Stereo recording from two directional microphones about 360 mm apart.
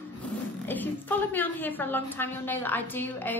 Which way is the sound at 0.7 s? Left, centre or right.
Centre.